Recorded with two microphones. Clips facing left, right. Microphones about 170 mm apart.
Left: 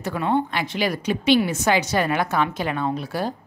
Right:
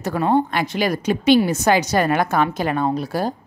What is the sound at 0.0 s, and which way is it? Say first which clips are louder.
A woman's voice: right 4 dB; 40° right (ahead or behind).